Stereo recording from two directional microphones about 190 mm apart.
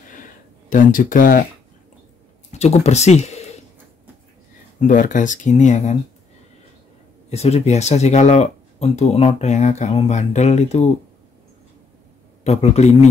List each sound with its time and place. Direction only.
0.7 s speech: 45° left (ahead or behind)
2.6 s speech: 35° left (ahead or behind)
4.7 s speech: 45° left (ahead or behind)
7.2 s speech: 35° left (ahead or behind)
12.4 s speech: 35° left (ahead or behind)